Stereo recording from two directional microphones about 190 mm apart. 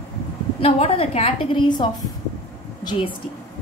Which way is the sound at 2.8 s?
20° left (ahead or behind).